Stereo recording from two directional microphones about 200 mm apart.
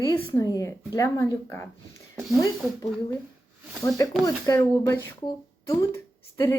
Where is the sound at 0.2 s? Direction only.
15° left (ahead or behind).